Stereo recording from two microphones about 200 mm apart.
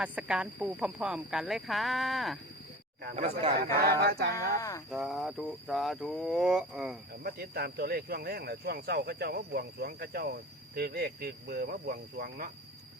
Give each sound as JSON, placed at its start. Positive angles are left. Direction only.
{"t": 0.0, "sound": "speech", "side_deg": -5}
{"t": 3.2, "sound": "speech", "side_deg": -30}
{"t": 3.6, "sound": "speech", "side_deg": -50}
{"t": 4.4, "sound": "speech", "side_deg": 15}
{"t": 4.9, "sound": "speech", "side_deg": 0}
{"t": 7.2, "sound": "speech", "side_deg": -50}